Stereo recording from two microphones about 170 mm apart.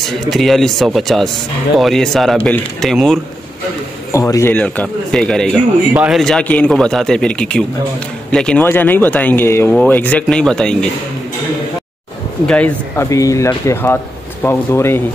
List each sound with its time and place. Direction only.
0.0 s a man's voice: centre (ahead or behind)
4.1 s a man's voice: 20° left (ahead or behind)
12.4 s speech: 10° left (ahead or behind)